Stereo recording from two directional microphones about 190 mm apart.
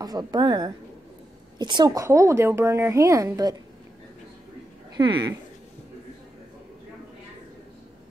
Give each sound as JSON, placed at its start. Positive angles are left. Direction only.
{"t": 0.0, "sound": "a woman's voice", "side_deg": -20}
{"t": 4.9, "sound": "a woman's voice", "side_deg": -25}